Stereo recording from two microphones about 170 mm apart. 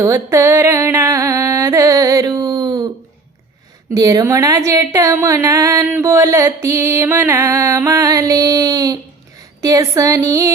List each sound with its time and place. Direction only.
0.0 s speech: 15° right (ahead or behind)
3.9 s speech: 20° right (ahead or behind)